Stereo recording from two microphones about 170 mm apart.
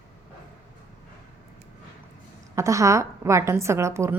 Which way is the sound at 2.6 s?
20° right (ahead or behind).